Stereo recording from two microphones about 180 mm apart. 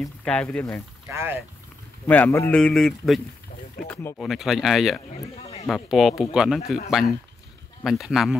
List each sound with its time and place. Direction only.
0.0 s speech: 5° left (ahead or behind)
1.1 s speech: 15° right (ahead or behind)
2.0 s speech: 10° left (ahead or behind)
5.1 s speech: 35° left (ahead or behind)
5.7 s speech: centre (ahead or behind)
7.8 s speech: centre (ahead or behind)